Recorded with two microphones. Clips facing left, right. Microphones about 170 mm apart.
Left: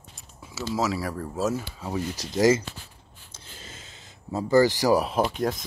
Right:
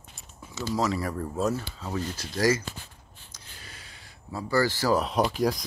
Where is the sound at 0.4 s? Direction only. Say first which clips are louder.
Left 1 dB; 10° left (ahead or behind).